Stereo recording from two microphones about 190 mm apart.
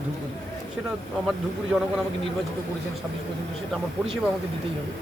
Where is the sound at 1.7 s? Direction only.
5° right (ahead or behind).